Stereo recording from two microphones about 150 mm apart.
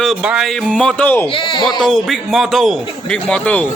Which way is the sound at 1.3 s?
30° left (ahead or behind).